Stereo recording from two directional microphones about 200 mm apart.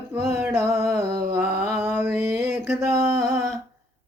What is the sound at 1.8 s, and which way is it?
Mantra, 10° right (ahead or behind).